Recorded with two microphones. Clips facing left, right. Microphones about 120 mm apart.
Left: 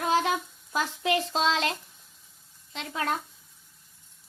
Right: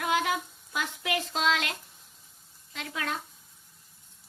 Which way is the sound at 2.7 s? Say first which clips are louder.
Left 3 dB; 25° left (ahead or behind).